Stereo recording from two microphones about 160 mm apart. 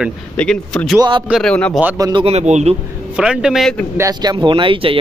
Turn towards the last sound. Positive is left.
turn(degrees=-35)  # may be behind; listen again after turning